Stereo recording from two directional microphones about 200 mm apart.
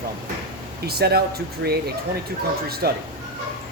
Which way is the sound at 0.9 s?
50° right (ahead or behind).